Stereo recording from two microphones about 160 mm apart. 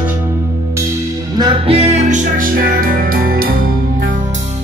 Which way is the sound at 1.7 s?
40° right (ahead or behind).